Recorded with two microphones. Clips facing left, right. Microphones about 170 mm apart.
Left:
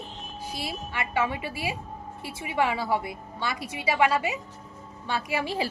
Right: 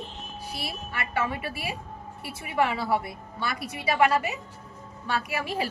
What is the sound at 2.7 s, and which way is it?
A woman's voice, 15° left (ahead or behind).